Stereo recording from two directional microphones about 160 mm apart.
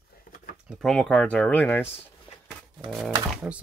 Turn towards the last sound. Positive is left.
turn(degrees=-10)  # may be behind; listen again after turning